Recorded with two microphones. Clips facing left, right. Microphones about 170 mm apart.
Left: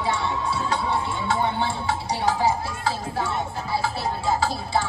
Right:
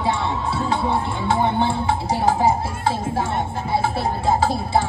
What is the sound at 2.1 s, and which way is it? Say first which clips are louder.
Music: right 4 dB; 50° right (ahead or behind).